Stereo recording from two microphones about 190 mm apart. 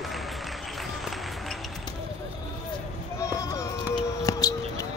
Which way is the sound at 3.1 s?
15° left (ahead or behind).